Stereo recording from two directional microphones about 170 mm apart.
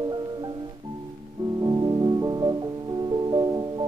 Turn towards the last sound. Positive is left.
turn(degrees=-25)  # may be behind; listen again after turning